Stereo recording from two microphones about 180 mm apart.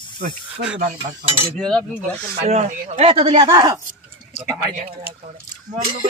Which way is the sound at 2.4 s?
40° right (ahead or behind).